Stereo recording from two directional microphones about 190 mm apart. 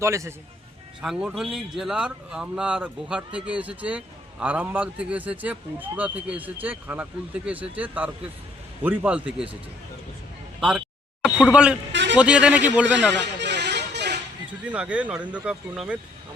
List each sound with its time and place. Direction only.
0.0 s a man's voice: 15° right (ahead or behind)
1.0 s a man's voice: centre (ahead or behind)
10.6 s a sound: 5° right (ahead or behind)
11.5 s speech: 5° right (ahead or behind)
11.9 s music: 70° right (ahead or behind)
12.1 s a man's voice: 5° right (ahead or behind)
13.1 s music: 65° right (ahead or behind)
14.6 s a man's voice: 5° right (ahead or behind)